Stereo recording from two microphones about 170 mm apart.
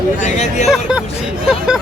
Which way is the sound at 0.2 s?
45° left (ahead or behind).